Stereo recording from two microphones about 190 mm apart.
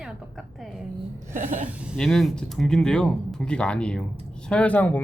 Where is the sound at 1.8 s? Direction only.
Centre (ahead or behind).